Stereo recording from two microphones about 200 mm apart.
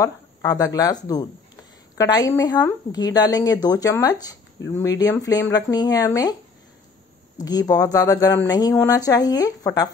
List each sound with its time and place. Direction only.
0.0 s a woman's voice: 15° left (ahead or behind)
7.4 s speech: 20° left (ahead or behind)